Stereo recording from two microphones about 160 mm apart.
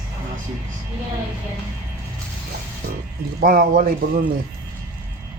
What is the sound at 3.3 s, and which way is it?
Speech, 65° right (ahead or behind).